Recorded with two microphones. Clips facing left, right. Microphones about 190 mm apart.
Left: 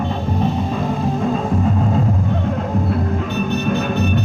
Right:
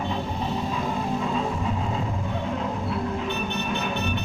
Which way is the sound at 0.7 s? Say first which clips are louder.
Left 6 dB; 50° left (ahead or behind).